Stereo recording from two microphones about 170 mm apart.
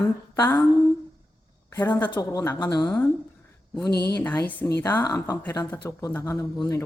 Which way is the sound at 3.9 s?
70° left (ahead or behind).